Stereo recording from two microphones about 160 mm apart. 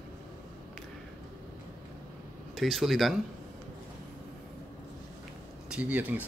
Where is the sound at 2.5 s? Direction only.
Centre (ahead or behind).